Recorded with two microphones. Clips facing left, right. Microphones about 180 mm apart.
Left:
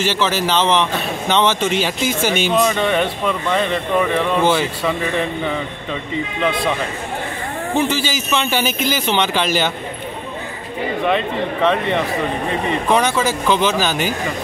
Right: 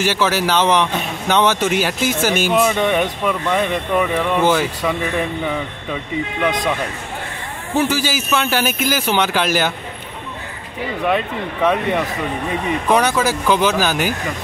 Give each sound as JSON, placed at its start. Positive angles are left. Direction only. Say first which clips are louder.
{"t": 0.0, "sound": "speech", "louder": "right 1 dB", "side_deg": -10}
{"t": 7.7, "sound": "speech", "louder": "right 1 dB", "side_deg": -10}
{"t": 11.1, "sound": "speech", "louder": "even", "side_deg": -5}
{"t": 13.2, "sound": "speech", "louder": "right 1 dB", "side_deg": -10}